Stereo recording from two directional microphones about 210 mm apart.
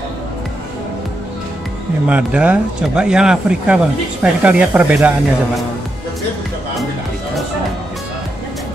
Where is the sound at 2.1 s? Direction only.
5° right (ahead or behind).